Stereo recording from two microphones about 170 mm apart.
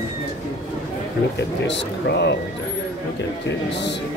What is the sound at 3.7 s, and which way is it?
Speech, 90° left.